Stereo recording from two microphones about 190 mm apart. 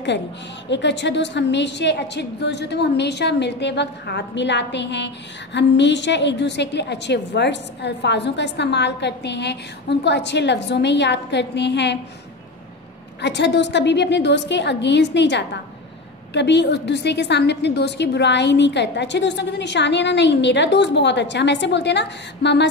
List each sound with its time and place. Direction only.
0.7 s a woman's voice: 70° left (ahead or behind)
13.2 s a woman's voice: 65° left (ahead or behind)